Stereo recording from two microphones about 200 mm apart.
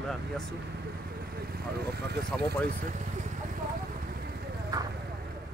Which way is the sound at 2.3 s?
Centre (ahead or behind).